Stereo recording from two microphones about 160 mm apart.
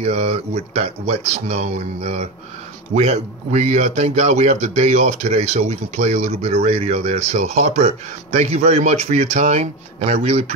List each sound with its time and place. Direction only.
0.0 s speech: 40° right (ahead or behind)